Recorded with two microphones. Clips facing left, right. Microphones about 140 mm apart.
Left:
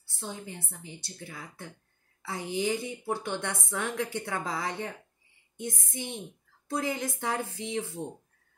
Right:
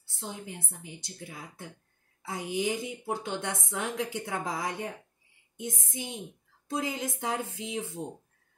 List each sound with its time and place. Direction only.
0.1 s a woman's voice: 15° right (ahead or behind)